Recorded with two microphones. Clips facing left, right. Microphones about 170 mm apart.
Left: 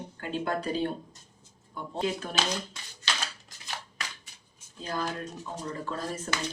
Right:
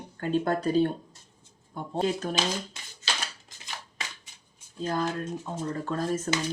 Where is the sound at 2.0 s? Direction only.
40° right (ahead or behind).